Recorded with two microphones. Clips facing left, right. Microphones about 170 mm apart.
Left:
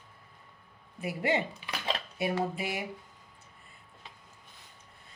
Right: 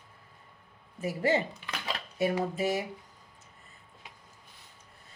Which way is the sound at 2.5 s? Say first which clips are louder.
Right 6 dB; 40° right (ahead or behind).